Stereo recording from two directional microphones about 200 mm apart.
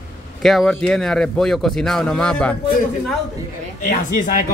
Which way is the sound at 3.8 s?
40° left (ahead or behind).